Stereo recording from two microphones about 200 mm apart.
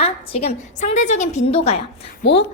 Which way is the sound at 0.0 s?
30° left (ahead or behind).